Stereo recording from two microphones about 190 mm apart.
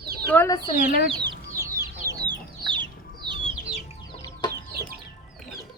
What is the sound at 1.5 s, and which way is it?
Chicken, 15° right (ahead or behind).